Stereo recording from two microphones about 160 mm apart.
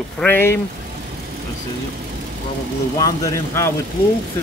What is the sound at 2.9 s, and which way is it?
Speech, 25° left (ahead or behind).